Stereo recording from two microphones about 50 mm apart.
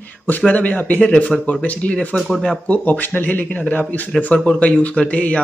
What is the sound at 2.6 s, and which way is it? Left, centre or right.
Speech, left.